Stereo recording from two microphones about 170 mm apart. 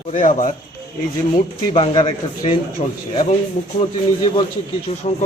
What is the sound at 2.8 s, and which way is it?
Speech, 40° left (ahead or behind).